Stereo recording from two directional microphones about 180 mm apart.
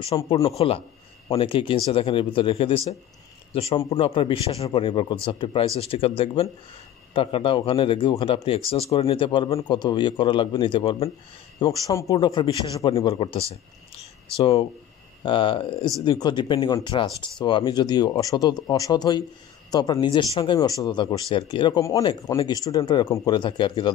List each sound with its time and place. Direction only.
0.3 s speech: 20° left (ahead or behind)
0.6 s speech: 30° left (ahead or behind)
11.6 s speech: 20° left (ahead or behind)